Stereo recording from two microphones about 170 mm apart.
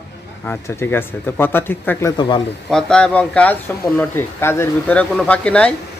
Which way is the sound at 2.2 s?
25° left (ahead or behind).